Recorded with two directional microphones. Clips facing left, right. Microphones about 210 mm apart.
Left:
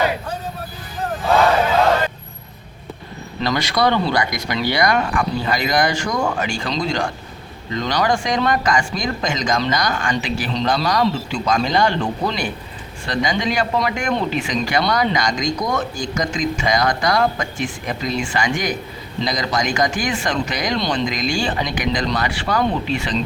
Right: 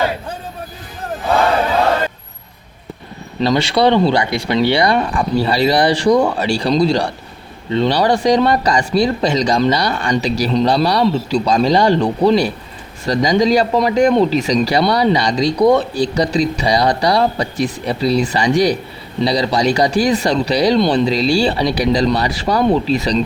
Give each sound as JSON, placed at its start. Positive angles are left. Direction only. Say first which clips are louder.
{"t": 3.4, "sound": "speech", "louder": "right 5 dB", "side_deg": -30}